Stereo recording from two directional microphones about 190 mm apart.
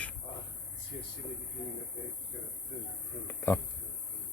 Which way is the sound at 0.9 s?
45° left (ahead or behind).